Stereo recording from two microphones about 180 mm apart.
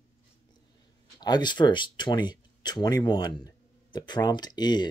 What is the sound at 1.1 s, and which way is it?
Speech, 25° left (ahead or behind).